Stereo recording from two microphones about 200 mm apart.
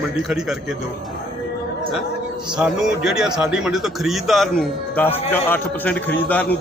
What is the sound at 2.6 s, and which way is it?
A man's voice, 5° right (ahead or behind).